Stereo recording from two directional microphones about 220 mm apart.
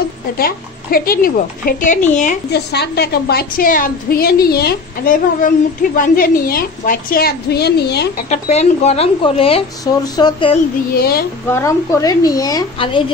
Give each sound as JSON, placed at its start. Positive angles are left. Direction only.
{"t": 0.4, "sound": "a woman's voice", "side_deg": 40}
{"t": 2.5, "sound": "a woman's voice", "side_deg": 50}
{"t": 8.3, "sound": "speech", "side_deg": 30}
{"t": 10.9, "sound": "a woman's voice", "side_deg": 45}
{"t": 11.5, "sound": "a woman's voice", "side_deg": 15}